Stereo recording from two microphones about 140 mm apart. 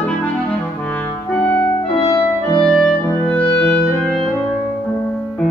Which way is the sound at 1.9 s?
40° left (ahead or behind).